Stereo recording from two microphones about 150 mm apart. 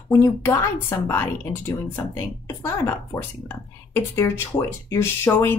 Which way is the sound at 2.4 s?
20° left (ahead or behind).